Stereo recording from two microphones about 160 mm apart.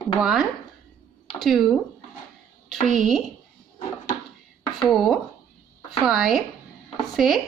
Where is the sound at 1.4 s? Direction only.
Centre (ahead or behind).